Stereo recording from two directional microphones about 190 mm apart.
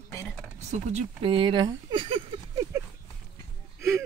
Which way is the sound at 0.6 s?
35° right (ahead or behind).